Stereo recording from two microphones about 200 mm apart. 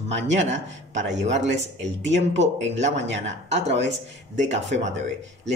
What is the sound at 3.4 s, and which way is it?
Speech, 35° right (ahead or behind).